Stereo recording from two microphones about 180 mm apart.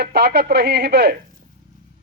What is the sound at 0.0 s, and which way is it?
A man's voice, 65° right (ahead or behind).